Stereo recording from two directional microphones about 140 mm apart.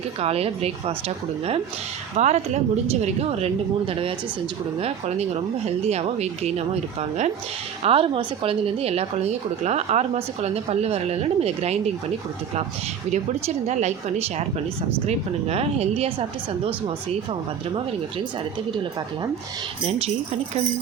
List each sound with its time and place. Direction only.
0.2 s speech: 45° right (ahead or behind)
2.1 s speech: 55° right (ahead or behind)
7.9 s speech: 40° right (ahead or behind)
13.7 s speech: 55° right (ahead or behind)
19.8 s speech: 45° right (ahead or behind)